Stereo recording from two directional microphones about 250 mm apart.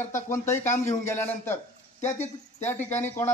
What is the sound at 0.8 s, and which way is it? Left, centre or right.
Speech, centre.